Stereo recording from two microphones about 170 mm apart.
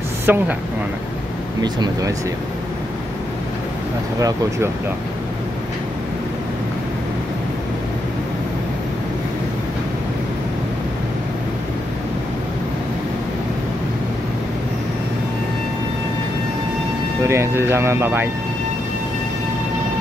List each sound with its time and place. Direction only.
0.3 s speech: 10° right (ahead or behind)
1.6 s speech: 20° right (ahead or behind)
4.2 s speech: 20° right (ahead or behind)
17.2 s speech: 15° right (ahead or behind)